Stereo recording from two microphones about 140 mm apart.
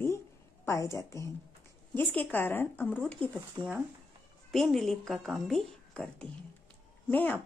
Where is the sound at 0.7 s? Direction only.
20° left (ahead or behind).